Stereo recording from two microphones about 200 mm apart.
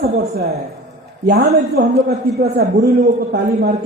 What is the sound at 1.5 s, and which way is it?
A man's voice, 55° right (ahead or behind).